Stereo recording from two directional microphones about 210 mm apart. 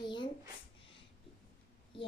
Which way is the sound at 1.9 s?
25° left (ahead or behind).